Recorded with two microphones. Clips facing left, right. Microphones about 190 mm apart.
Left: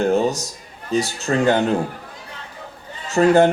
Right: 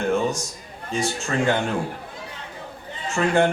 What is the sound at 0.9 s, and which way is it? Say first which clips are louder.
Speech: left 5 dB; 35° left (ahead or behind).